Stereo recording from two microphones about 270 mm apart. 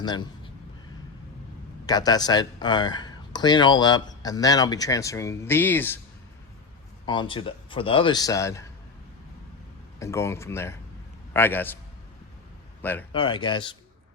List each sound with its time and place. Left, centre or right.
0.0 s a sound: centre
1.9 s speech: centre
7.0 s speech: centre
10.0 s speech: centre
12.8 s a man's voice: centre
13.1 s speech: centre